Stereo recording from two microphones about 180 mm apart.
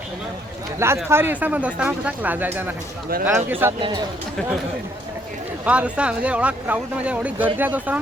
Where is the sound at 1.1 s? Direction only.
10° right (ahead or behind).